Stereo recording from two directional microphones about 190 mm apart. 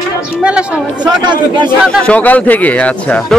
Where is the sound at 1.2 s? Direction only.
25° right (ahead or behind).